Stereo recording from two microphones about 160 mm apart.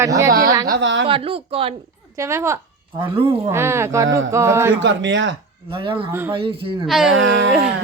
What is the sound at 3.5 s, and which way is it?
Speech, 15° right (ahead or behind).